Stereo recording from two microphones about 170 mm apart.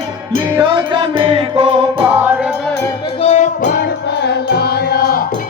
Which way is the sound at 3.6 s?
75° left (ahead or behind).